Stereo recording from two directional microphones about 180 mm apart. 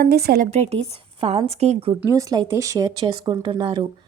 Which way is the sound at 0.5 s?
35° right (ahead or behind).